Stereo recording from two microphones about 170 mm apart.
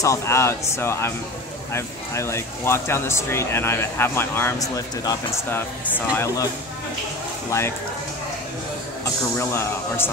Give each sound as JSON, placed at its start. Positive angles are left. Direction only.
{"t": 0.0, "sound": "speech", "side_deg": 15}
{"t": 9.4, "sound": "speech", "side_deg": 15}